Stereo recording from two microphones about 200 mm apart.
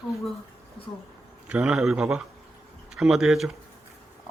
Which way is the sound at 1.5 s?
5° right (ahead or behind).